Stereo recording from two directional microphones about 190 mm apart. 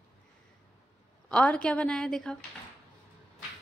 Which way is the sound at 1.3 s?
5° left (ahead or behind).